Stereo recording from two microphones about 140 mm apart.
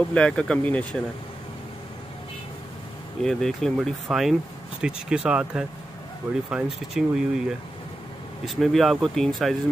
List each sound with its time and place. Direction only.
0.1 s speech: 5° left (ahead or behind)
3.2 s speech: 5° left (ahead or behind)